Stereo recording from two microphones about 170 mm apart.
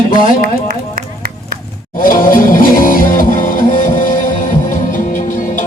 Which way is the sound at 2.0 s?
55° left (ahead or behind).